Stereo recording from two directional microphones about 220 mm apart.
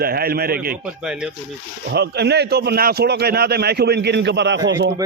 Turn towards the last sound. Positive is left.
turn(degrees=-50)  # may be behind; listen again after turning